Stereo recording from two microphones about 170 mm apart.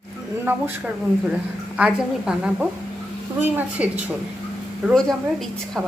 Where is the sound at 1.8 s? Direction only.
5° right (ahead or behind).